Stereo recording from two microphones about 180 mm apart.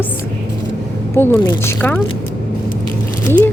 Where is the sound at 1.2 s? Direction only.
15° left (ahead or behind).